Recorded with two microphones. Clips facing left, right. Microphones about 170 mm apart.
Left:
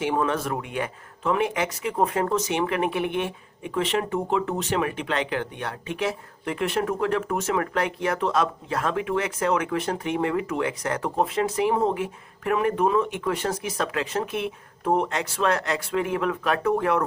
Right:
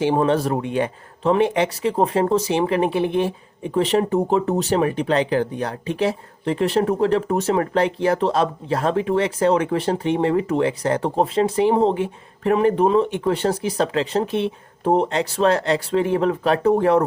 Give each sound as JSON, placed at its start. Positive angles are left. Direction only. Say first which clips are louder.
{"t": 0.0, "sound": "speech", "louder": "right 6 dB", "side_deg": -30}